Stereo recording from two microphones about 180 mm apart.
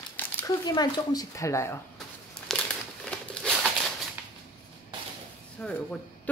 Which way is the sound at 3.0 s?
5° left (ahead or behind).